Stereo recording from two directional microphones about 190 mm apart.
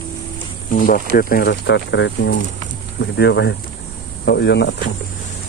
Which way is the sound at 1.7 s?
75° left (ahead or behind).